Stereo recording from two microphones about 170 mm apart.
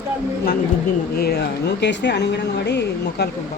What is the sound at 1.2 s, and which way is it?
Speech, 70° left (ahead or behind).